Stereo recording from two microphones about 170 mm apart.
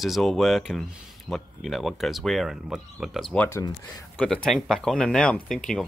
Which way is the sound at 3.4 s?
15° left (ahead or behind).